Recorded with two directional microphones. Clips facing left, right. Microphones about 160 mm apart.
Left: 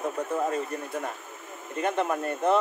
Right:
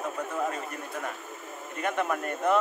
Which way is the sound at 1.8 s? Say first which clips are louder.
Left 2 dB; 30° left (ahead or behind).